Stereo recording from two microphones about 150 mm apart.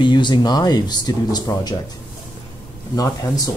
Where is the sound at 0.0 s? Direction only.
30° left (ahead or behind).